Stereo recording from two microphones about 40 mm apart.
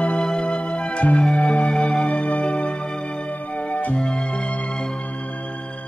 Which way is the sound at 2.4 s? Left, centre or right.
Centre.